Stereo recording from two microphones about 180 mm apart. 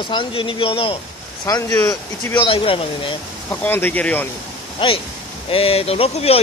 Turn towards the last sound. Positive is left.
turn(degrees=35)  # may be behind; listen again after turning